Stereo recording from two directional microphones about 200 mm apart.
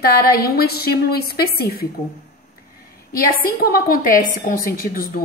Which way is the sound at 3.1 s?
45° left (ahead or behind).